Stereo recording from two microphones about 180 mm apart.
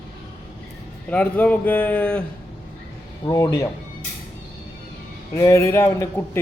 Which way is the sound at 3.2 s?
20° left (ahead or behind).